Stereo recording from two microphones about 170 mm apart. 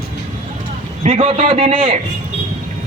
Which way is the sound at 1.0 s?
35° right (ahead or behind).